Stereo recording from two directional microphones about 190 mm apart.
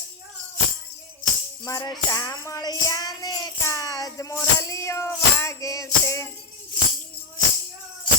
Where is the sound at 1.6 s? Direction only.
20° left (ahead or behind).